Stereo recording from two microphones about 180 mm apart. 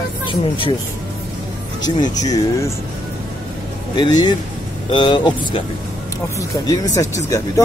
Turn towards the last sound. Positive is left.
turn(degrees=15)  # may be behind; listen again after turning